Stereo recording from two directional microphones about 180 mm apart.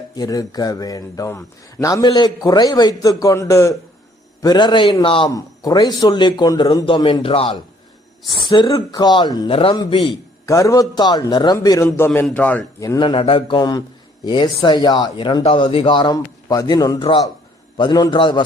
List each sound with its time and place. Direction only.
0.2 s a man's voice: 20° left (ahead or behind)
12.8 s a man's voice: 20° left (ahead or behind)